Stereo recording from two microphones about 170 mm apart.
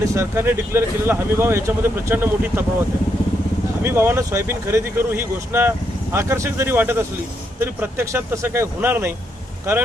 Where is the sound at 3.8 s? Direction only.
15° right (ahead or behind).